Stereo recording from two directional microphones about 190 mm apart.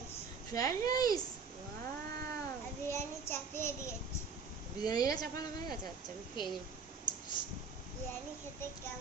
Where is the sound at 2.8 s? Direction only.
15° left (ahead or behind).